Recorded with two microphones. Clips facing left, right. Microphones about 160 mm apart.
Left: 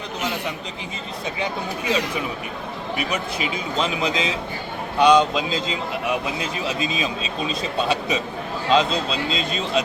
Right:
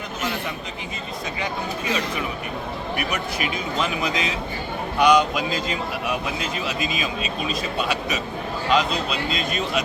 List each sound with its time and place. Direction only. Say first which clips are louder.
3.0 s a man's voice: left 2 dB; 20° left (ahead or behind)